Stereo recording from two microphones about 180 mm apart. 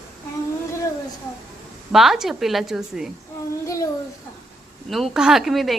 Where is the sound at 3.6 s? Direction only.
15° left (ahead or behind).